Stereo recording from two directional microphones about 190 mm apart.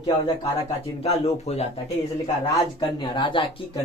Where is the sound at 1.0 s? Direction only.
35° left (ahead or behind).